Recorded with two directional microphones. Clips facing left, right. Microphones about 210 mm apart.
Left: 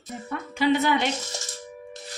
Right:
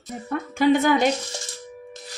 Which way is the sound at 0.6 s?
50° right (ahead or behind).